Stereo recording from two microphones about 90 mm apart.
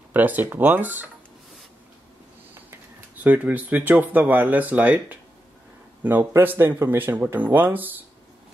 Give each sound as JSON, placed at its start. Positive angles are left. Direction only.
{"t": 0.1, "sound": "speech", "side_deg": -20}
{"t": 2.5, "sound": "speech", "side_deg": -20}